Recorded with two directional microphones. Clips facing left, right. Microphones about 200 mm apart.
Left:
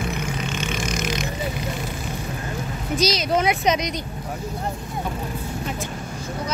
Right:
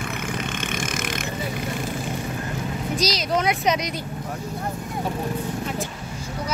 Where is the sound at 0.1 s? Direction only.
55° right (ahead or behind).